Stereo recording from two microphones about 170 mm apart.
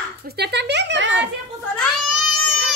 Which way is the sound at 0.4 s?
90° right.